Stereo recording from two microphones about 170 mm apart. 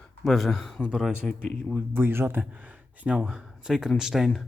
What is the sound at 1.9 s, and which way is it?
Speech, 15° right (ahead or behind).